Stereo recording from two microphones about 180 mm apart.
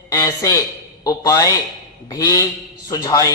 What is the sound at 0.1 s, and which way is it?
A man's voice, 20° left (ahead or behind).